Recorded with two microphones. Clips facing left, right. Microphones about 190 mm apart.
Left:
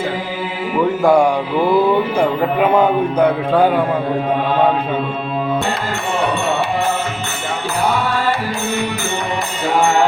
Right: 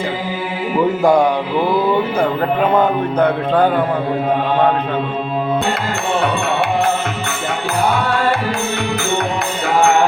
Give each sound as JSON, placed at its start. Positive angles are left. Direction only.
{"t": 1.0, "sound": "a man's voice", "side_deg": 10}